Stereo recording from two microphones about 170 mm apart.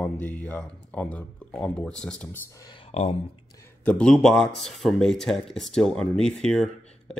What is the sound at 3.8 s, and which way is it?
Speech, 5° left (ahead or behind).